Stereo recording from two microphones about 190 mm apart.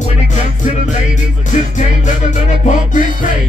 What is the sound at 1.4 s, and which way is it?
Music, 40° left (ahead or behind).